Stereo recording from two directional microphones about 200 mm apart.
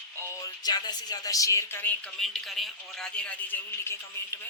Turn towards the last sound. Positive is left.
turn(degrees=10)  # may be behind; listen again after turning